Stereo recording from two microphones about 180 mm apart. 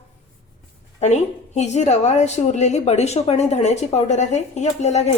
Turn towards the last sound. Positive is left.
turn(degrees=40)  # may be behind; listen again after turning